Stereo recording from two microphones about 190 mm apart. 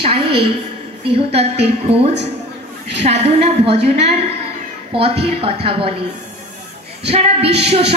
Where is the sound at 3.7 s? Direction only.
60° right (ahead or behind).